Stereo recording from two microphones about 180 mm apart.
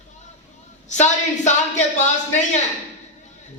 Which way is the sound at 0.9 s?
40° left (ahead or behind).